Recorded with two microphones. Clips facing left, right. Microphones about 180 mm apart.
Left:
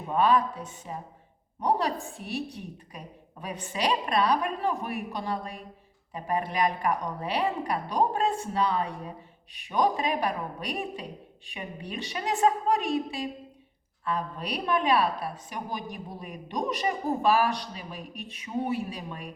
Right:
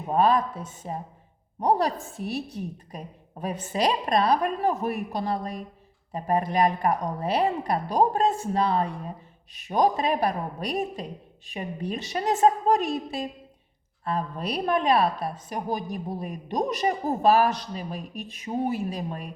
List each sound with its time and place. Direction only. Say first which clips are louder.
0.1 s a woman's voice: right 2 dB; 40° right (ahead or behind)
3.4 s a woman's voice: right 4 dB; 40° right (ahead or behind)